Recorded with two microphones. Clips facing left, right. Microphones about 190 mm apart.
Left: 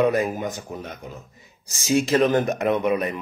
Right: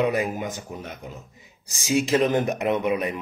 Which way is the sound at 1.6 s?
15° right (ahead or behind).